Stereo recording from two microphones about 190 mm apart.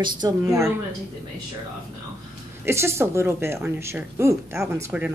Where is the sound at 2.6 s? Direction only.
15° right (ahead or behind).